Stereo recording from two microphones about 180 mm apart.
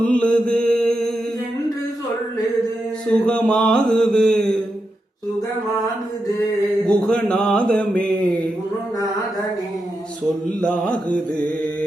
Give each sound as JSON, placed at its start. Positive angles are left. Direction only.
{"t": 0.0, "sound": "mantra", "side_deg": 5}
{"t": 3.1, "sound": "mantra", "side_deg": 5}
{"t": 7.1, "sound": "mantra", "side_deg": 5}
{"t": 10.6, "sound": "mantra", "side_deg": 5}